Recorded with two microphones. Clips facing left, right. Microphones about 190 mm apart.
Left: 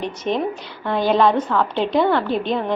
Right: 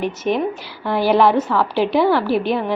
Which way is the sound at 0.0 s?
5° right (ahead or behind).